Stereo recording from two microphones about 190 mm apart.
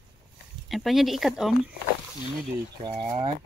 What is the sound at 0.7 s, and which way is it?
Speech, centre (ahead or behind).